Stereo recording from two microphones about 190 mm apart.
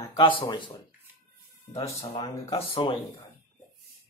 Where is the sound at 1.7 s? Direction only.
30° left (ahead or behind).